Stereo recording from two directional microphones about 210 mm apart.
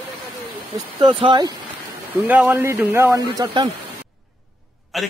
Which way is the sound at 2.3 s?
10° right (ahead or behind).